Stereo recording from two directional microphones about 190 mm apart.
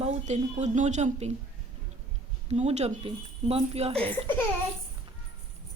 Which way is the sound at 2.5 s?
35° right (ahead or behind).